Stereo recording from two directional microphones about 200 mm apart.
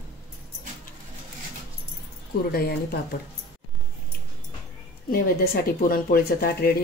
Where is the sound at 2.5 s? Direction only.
50° left (ahead or behind).